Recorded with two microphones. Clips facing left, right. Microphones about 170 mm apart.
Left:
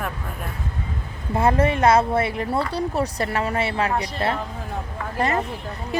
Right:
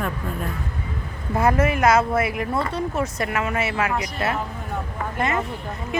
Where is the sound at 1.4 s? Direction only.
30° left (ahead or behind).